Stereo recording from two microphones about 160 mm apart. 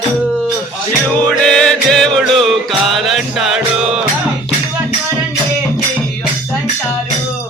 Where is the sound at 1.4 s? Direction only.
5° left (ahead or behind).